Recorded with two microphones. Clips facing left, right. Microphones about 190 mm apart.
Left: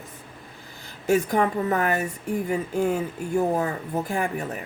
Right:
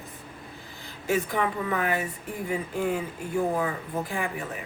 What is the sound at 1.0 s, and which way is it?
Speech, 45° left (ahead or behind).